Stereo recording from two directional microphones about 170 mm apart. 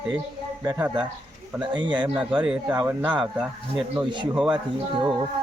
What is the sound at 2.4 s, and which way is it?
Speech, 10° right (ahead or behind).